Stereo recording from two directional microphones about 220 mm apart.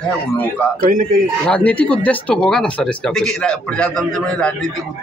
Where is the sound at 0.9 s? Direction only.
40° right (ahead or behind).